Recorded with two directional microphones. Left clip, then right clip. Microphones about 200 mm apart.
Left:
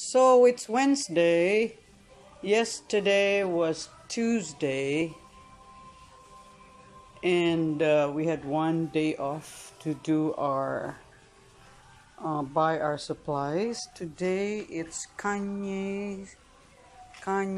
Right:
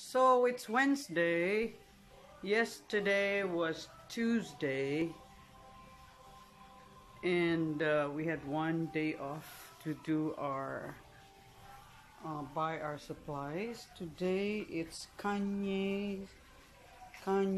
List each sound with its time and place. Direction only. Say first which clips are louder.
0.0 s speech: left 9 dB; 10° left (ahead or behind)
7.2 s speech: left 7 dB; 5° left (ahead or behind)
12.2 s speech: left 11 dB; 30° left (ahead or behind)
14.1 s speech: left 6 dB; centre (ahead or behind)
17.2 s speech: left 4 dB; 5° right (ahead or behind)